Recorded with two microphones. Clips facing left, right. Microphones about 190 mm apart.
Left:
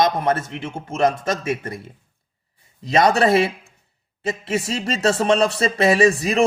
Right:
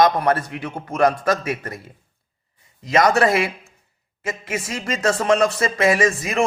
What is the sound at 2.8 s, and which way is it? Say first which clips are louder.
A man's voice: even; 30° left (ahead or behind).